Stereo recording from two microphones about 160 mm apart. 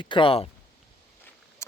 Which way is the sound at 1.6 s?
20° left (ahead or behind).